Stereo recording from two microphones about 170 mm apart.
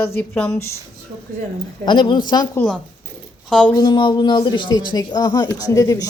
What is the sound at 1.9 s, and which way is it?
Speech, 25° left (ahead or behind).